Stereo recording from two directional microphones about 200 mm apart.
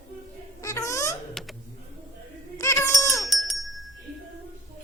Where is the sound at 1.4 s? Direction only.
Centre (ahead or behind).